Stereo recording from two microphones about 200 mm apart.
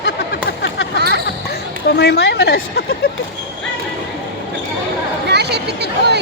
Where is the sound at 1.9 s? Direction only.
55° left (ahead or behind).